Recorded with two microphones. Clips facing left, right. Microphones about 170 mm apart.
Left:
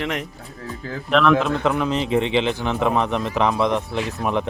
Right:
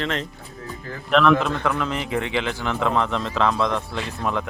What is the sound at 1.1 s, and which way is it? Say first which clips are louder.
Speech: left 1 dB; centre (ahead or behind).